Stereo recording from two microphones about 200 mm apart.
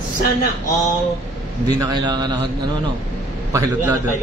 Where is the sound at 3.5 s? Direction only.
15° right (ahead or behind).